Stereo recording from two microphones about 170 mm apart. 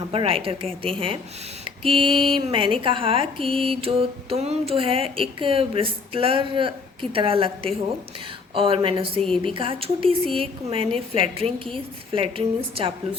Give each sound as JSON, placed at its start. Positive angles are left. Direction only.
{"t": 0.1, "sound": "speech", "side_deg": -35}
{"t": 3.4, "sound": "mantra", "side_deg": 0}
{"t": 3.8, "sound": "speech", "side_deg": -35}